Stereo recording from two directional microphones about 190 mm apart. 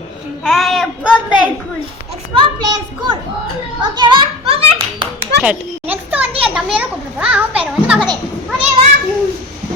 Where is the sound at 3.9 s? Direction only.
25° right (ahead or behind).